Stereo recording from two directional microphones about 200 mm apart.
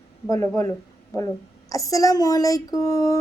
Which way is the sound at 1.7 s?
15° left (ahead or behind).